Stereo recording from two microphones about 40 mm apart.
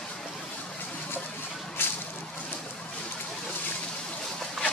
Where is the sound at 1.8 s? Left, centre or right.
Left.